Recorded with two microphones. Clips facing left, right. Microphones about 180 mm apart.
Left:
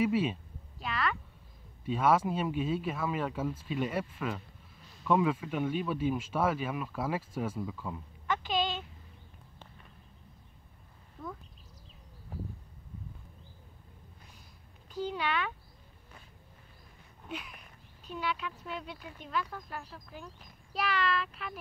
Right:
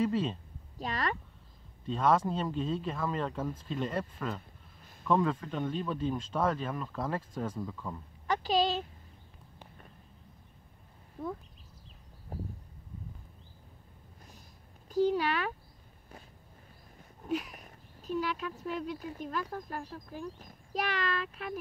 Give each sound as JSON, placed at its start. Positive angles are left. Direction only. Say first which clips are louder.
{"t": 0.0, "sound": "speech", "louder": "left 1 dB", "side_deg": 10}
{"t": 0.7, "sound": "a child's voice", "louder": "even", "side_deg": -40}
{"t": 1.9, "sound": "speech", "louder": "even", "side_deg": 5}
{"t": 8.3, "sound": "a sound", "louder": "right 3 dB", "side_deg": -35}
{"t": 12.3, "sound": "a sound", "louder": "right 1 dB", "side_deg": -40}
{"t": 14.9, "sound": "a child's voice", "louder": "right 6 dB", "side_deg": -40}
{"t": 17.3, "sound": "speech", "louder": "right 9 dB", "side_deg": -40}